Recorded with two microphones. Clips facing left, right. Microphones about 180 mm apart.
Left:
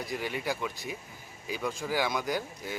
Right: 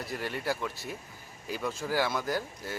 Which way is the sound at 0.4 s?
5° right (ahead or behind).